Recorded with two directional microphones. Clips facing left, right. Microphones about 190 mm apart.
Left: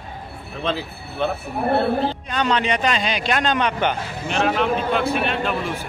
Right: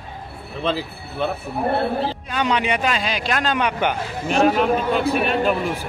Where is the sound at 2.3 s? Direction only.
10° right (ahead or behind).